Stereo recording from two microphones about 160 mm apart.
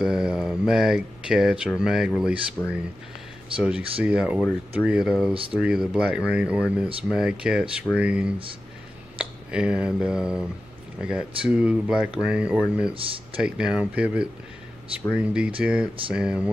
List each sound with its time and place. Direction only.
0.0 s speech: 5° right (ahead or behind)
2.6 s speech: 15° left (ahead or behind)
3.5 s speech: 5° right (ahead or behind)
12.9 s speech: 35° right (ahead or behind)
13.4 s speech: 5° right (ahead or behind)